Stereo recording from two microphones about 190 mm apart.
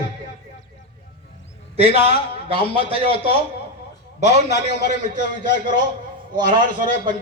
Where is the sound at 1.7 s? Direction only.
35° right (ahead or behind).